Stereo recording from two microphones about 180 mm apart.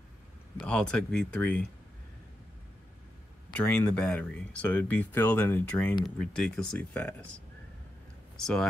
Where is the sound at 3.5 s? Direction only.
5° left (ahead or behind).